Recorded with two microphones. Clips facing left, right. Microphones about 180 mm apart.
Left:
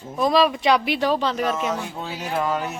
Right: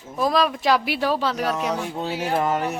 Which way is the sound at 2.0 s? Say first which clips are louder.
Right 4 dB; 30° right (ahead or behind).